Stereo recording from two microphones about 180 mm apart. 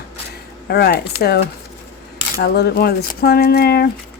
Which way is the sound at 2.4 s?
65° left (ahead or behind).